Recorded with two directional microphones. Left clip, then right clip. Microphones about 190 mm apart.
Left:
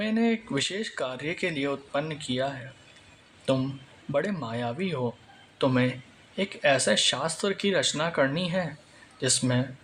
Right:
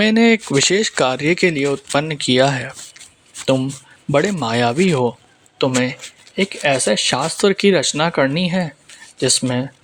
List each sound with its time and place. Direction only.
0.0 s speech: 45° right (ahead or behind)
4.1 s speech: 45° right (ahead or behind)